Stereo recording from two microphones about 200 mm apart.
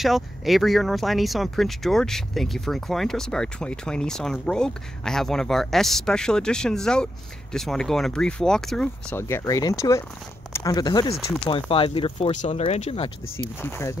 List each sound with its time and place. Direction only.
0.0 s speech: centre (ahead or behind); by 13.5 s 30° left (ahead or behind)
13.6 s speech: 10° left (ahead or behind)